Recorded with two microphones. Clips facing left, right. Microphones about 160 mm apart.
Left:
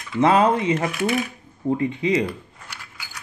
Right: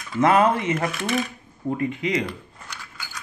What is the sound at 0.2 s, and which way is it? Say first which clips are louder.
Cutlery: left 1 dB; 15° left (ahead or behind).